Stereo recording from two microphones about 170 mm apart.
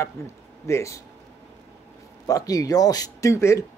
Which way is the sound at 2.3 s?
20° left (ahead or behind).